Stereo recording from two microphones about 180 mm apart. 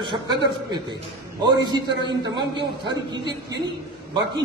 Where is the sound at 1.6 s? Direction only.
25° right (ahead or behind).